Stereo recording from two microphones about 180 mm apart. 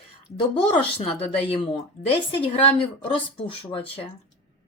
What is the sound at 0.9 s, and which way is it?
A woman's voice, 30° left (ahead or behind).